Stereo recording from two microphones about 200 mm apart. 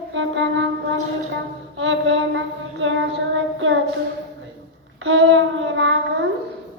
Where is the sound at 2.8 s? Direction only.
70° right (ahead or behind).